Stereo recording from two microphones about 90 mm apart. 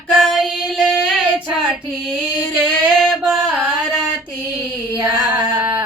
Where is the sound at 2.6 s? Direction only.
5° left (ahead or behind).